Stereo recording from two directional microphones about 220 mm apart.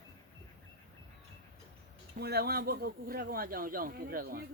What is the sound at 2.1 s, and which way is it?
Speech, 45° right (ahead or behind).